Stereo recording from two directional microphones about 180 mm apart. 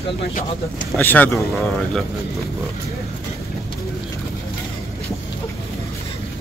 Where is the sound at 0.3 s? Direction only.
50° left (ahead or behind).